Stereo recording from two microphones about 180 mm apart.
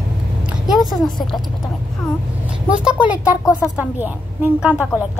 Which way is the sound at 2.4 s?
5° right (ahead or behind).